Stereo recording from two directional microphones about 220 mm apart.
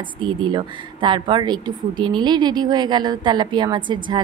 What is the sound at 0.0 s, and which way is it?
A woman's voice, 20° right (ahead or behind).